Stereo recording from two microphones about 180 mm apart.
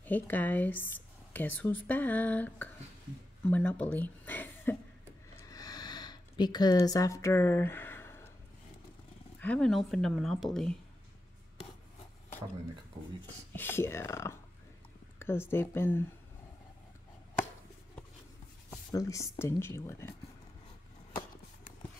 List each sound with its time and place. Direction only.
0.0 s speech: 10° left (ahead or behind)
5.3 s a sound: 20° left (ahead or behind)
9.4 s speech: 5° left (ahead or behind)
13.5 s speech: 10° left (ahead or behind)
18.9 s speech: 20° left (ahead or behind)